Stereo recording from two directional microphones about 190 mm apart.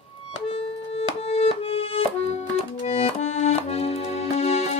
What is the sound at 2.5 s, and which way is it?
Accordion, 30° left (ahead or behind).